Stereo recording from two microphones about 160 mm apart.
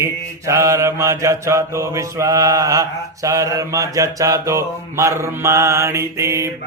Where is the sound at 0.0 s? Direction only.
20° right (ahead or behind).